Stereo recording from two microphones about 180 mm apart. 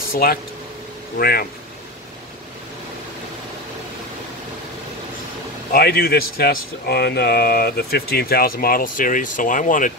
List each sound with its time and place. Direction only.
0.1 s speech: 55° left (ahead or behind)
5.7 s speech: 60° left (ahead or behind)